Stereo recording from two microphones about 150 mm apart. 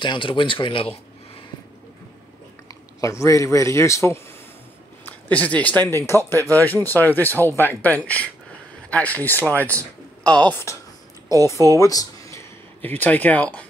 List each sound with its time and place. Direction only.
0.0 s speech: 35° left (ahead or behind)
3.0 s a man's voice: 20° left (ahead or behind)
11.2 s a sound: 20° left (ahead or behind)
13.0 s a man's voice: 10° left (ahead or behind)